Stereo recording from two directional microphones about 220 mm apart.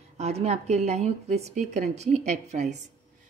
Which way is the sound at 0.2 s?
30° right (ahead or behind).